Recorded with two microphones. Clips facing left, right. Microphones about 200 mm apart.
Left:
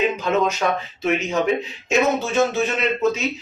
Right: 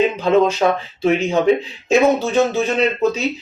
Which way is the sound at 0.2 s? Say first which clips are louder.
Right 6 dB; 30° right (ahead or behind).